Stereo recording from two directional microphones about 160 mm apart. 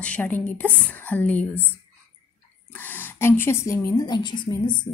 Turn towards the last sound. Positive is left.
turn(degrees=30)  # may be behind; listen again after turning